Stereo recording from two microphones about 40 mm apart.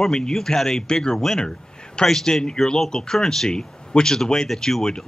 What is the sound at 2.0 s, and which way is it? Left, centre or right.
Speech, left.